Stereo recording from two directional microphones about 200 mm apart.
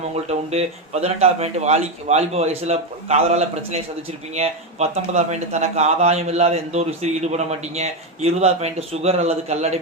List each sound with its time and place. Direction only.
0.1 s speech: 30° right (ahead or behind)